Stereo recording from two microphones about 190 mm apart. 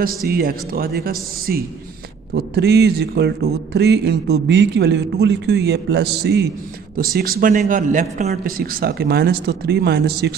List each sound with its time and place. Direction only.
0.0 s a man's voice: 50° right (ahead or behind)